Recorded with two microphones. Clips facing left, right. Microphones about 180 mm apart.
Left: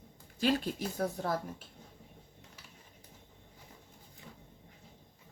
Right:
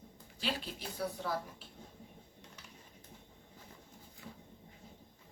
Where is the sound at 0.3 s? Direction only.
45° left (ahead or behind).